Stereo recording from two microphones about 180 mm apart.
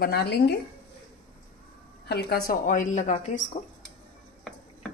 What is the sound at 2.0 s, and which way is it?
Speech, 60° left (ahead or behind).